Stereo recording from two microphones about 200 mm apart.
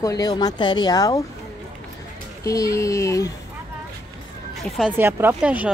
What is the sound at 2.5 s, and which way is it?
Speech, 15° left (ahead or behind).